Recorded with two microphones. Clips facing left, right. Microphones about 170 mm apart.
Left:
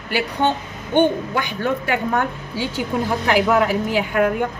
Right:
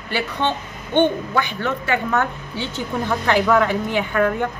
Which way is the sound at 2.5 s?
10° left (ahead or behind).